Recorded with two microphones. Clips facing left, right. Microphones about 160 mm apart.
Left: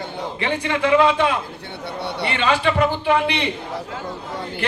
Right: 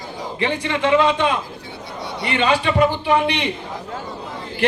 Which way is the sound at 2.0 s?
65° left (ahead or behind).